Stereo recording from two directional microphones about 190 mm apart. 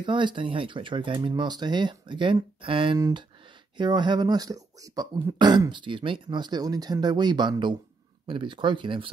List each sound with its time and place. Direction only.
0.0 s speech: 25° right (ahead or behind)